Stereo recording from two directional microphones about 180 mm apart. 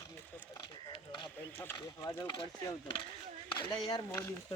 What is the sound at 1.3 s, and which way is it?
Speech, 10° left (ahead or behind).